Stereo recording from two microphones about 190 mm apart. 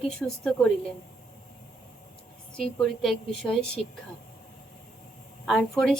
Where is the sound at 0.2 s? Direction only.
5° left (ahead or behind).